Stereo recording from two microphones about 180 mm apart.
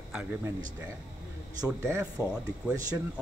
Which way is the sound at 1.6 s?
15° right (ahead or behind).